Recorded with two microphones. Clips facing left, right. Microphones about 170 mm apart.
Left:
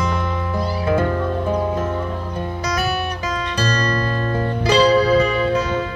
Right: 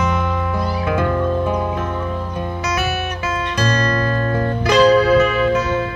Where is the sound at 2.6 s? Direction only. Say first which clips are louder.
Even; 35° left (ahead or behind).